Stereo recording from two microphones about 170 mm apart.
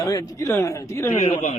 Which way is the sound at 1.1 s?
45° left (ahead or behind).